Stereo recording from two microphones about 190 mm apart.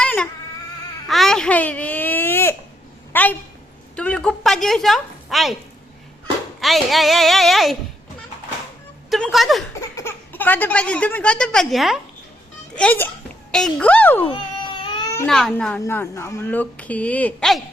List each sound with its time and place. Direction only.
0.0 s dog: 5° left (ahead or behind)
1.0 s crying: centre (ahead or behind)
3.1 s a sound: 10° left (ahead or behind)
3.9 s a woman's voice: 5° left (ahead or behind)
6.6 s speech: centre (ahead or behind)
9.0 s speech: centre (ahead or behind)
9.7 s speech: 15° left (ahead or behind)
14.3 s a sound: 25° left (ahead or behind)
15.3 s speech: centre (ahead or behind)